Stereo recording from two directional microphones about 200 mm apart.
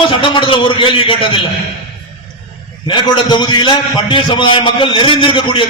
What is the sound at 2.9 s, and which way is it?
A man's voice, 25° left (ahead or behind).